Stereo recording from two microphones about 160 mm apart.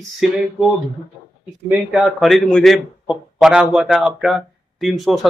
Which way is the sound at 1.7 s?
5° right (ahead or behind).